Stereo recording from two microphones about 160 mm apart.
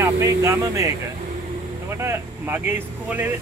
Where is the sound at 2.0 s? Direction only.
15° right (ahead or behind).